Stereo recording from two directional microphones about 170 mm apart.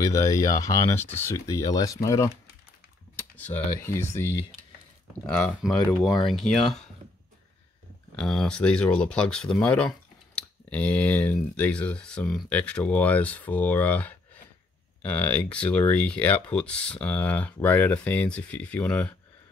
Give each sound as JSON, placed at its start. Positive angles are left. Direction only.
{"t": 0.0, "sound": "speech", "side_deg": 20}
{"t": 3.8, "sound": "speech", "side_deg": 15}
{"t": 8.2, "sound": "speech", "side_deg": 5}